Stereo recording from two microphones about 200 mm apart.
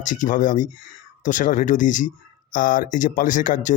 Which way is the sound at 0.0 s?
40° left (ahead or behind).